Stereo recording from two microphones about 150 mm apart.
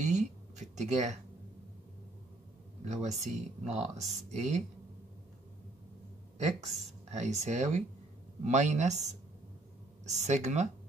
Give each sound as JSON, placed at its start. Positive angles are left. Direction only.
{"t": 0.0, "sound": "a sound", "side_deg": -50}
{"t": 2.8, "sound": "speech", "side_deg": -50}
{"t": 6.3, "sound": "speech", "side_deg": -50}
{"t": 10.0, "sound": "speech", "side_deg": -50}